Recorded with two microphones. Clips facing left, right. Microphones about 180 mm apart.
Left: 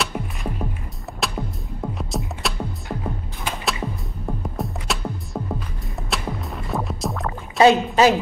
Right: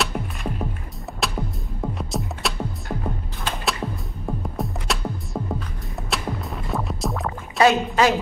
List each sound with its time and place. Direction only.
0.0 s music: centre (ahead or behind)
7.5 s speech: 25° left (ahead or behind)